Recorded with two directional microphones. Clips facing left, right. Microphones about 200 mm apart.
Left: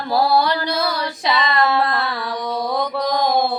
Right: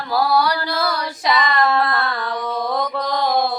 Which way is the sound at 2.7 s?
15° left (ahead or behind).